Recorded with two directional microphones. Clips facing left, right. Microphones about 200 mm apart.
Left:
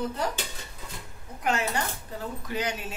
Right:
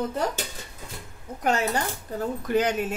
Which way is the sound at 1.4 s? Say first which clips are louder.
Right 3 dB; 40° right (ahead or behind).